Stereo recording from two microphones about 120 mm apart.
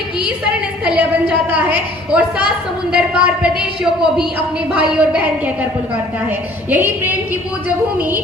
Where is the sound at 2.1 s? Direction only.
10° right (ahead or behind).